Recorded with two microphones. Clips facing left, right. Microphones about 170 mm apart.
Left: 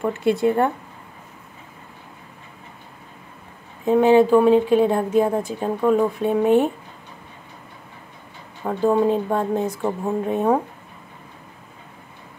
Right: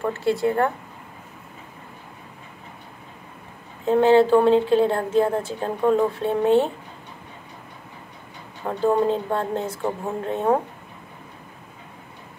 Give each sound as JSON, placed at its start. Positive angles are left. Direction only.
{"t": 0.0, "sound": "speech", "side_deg": 20}
{"t": 3.8, "sound": "speech", "side_deg": 15}
{"t": 8.6, "sound": "speech", "side_deg": 15}